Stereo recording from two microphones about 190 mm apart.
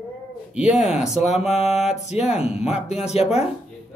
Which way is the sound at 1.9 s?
35° left (ahead or behind).